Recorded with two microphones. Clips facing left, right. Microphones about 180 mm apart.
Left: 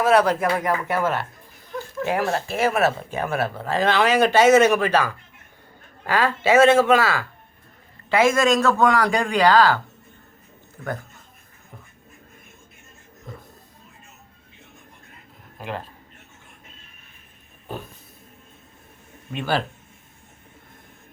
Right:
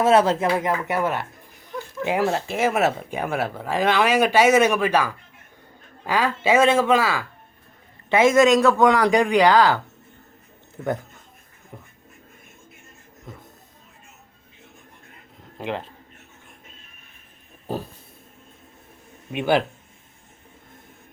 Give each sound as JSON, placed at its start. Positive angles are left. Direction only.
{"t": 0.0, "sound": "a man's voice", "side_deg": -25}
{"t": 15.5, "sound": "a man's voice", "side_deg": -20}
{"t": 19.3, "sound": "speech", "side_deg": -15}